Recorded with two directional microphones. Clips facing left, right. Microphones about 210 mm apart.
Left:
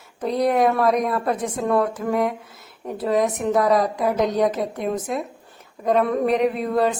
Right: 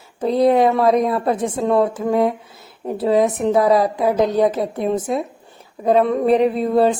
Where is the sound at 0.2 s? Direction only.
30° right (ahead or behind).